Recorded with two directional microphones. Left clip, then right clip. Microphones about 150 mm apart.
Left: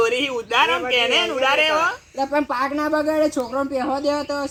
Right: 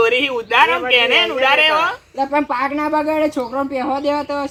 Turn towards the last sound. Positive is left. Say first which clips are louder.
# right 3 dB
turn(degrees=-20)  # may be behind; listen again after turning